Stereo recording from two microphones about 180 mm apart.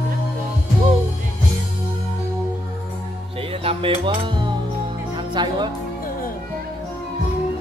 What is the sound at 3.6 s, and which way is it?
Music, 30° right (ahead or behind).